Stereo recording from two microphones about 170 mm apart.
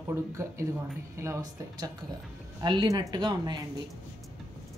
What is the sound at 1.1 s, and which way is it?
Speech, 15° right (ahead or behind).